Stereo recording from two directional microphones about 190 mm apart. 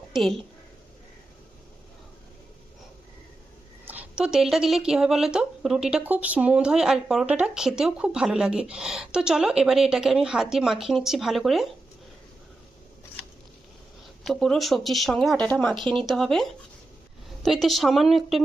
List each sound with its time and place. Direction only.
0.1 s a woman's voice: centre (ahead or behind)
3.8 s speech: 5° right (ahead or behind)
14.3 s speech: centre (ahead or behind)